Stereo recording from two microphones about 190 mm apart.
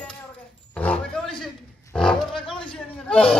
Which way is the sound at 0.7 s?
5° left (ahead or behind).